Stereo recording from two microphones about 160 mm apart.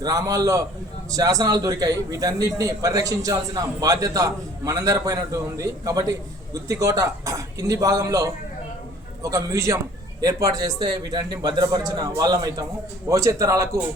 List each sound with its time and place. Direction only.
0.0 s a man's voice: 20° right (ahead or behind)